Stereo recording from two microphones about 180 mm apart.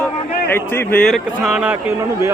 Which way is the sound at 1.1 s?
5° right (ahead or behind).